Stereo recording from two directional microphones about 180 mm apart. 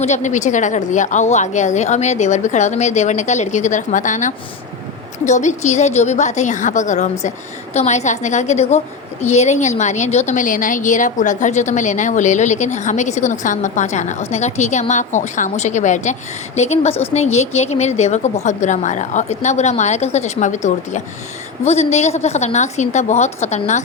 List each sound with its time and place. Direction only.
0.0 s a woman's voice: 40° left (ahead or behind)